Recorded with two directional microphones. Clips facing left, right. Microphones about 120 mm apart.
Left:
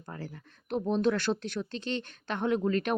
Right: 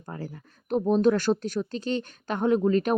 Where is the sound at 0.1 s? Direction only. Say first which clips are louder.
Right 4 dB; 30° right (ahead or behind).